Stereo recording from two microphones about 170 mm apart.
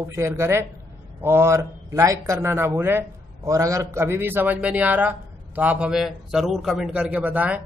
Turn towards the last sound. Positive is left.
turn(degrees=-10)  # may be behind; listen again after turning